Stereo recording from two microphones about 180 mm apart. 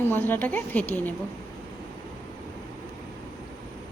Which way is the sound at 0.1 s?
10° left (ahead or behind).